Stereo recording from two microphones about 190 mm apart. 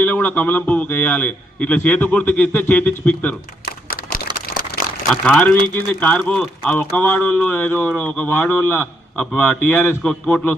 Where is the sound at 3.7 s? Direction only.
50° left (ahead or behind).